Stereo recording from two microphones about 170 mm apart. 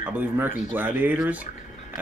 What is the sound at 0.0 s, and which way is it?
Speech, 10° right (ahead or behind).